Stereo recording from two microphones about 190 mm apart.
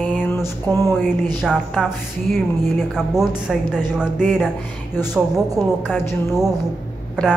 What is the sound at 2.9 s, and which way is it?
A woman's voice, 5° right (ahead or behind).